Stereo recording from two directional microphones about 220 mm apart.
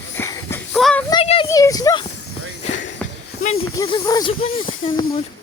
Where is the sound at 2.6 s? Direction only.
30° left (ahead or behind).